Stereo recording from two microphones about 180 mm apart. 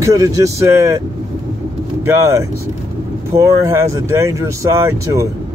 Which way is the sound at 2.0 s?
15° right (ahead or behind).